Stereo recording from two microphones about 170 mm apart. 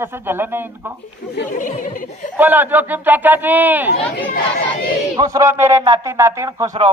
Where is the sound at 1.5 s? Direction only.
50° left (ahead or behind).